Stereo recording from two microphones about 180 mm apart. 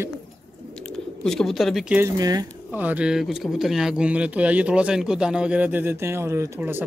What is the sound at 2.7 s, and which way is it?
Speech, 10° right (ahead or behind).